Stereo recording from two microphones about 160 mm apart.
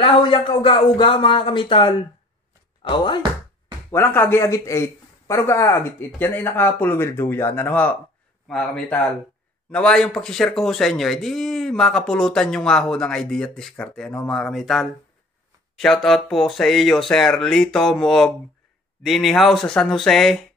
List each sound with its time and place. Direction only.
0.0 s speech: 35° left (ahead or behind)
3.9 s speech: 15° left (ahead or behind)